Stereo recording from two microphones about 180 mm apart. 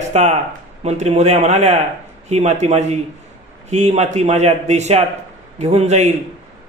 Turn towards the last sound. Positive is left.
turn(degrees=-40)  # may be behind; listen again after turning